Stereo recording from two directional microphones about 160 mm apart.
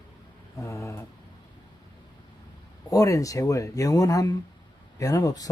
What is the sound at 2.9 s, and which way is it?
Speech, 20° left (ahead or behind).